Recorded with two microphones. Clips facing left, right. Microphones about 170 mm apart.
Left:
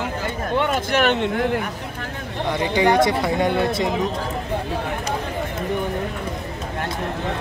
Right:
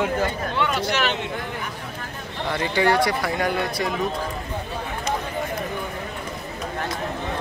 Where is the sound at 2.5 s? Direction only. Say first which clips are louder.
Left 3 dB; 15° left (ahead or behind).